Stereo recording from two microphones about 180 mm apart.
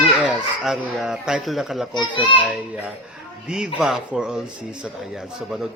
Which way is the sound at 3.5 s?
Centre (ahead or behind).